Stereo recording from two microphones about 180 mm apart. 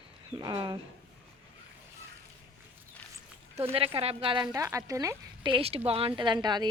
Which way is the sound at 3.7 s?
30° right (ahead or behind).